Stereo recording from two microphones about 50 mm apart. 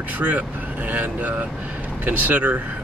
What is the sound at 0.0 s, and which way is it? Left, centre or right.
Speech, right.